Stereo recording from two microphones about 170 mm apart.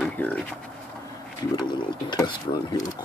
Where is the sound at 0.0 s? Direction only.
10° left (ahead or behind).